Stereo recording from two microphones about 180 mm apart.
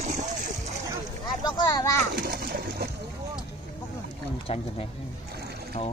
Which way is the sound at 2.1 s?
60° right (ahead or behind).